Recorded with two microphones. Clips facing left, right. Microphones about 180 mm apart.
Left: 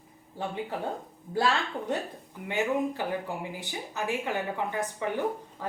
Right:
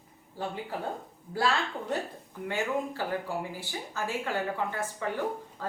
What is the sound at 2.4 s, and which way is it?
Speech, 20° left (ahead or behind).